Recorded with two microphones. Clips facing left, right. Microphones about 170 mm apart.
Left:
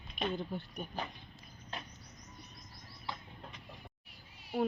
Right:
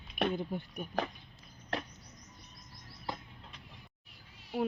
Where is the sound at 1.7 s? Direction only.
80° right.